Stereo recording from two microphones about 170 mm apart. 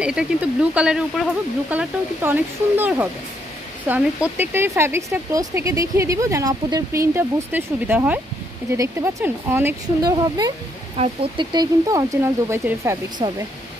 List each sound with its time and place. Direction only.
0.0 s speech: 5° right (ahead or behind)
10.1 s speech: 25° right (ahead or behind)